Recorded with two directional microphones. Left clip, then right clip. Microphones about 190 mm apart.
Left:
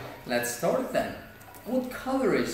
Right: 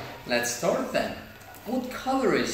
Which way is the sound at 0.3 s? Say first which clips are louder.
Right 1 dB; 15° left (ahead or behind).